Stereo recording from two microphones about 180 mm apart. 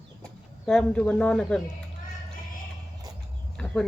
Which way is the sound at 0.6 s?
5° left (ahead or behind).